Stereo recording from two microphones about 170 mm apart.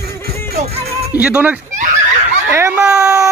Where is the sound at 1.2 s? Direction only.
10° right (ahead or behind).